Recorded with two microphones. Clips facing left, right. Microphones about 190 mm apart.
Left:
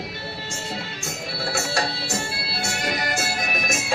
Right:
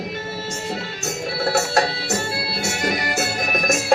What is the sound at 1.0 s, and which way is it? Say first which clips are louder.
Music: right 10 dB; 45° right (ahead or behind).